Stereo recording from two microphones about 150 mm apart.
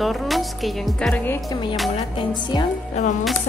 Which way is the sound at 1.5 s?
30° left (ahead or behind).